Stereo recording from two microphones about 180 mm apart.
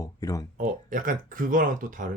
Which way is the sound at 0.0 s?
20° left (ahead or behind).